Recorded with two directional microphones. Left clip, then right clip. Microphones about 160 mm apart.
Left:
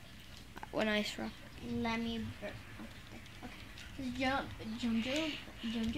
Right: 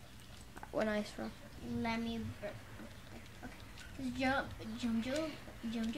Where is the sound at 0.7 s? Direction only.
5° right (ahead or behind).